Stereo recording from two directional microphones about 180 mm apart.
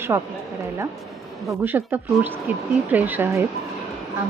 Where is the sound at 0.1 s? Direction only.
15° right (ahead or behind).